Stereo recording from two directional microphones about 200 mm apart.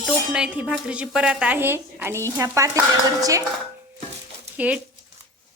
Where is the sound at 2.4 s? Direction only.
15° right (ahead or behind).